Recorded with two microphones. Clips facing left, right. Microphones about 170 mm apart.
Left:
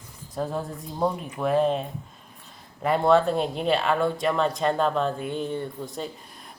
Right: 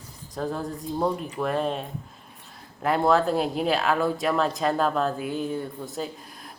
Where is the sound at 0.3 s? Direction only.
Centre (ahead or behind).